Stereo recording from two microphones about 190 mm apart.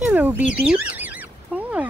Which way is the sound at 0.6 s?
10° right (ahead or behind).